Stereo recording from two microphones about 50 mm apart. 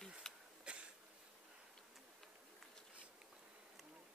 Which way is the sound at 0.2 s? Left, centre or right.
Centre.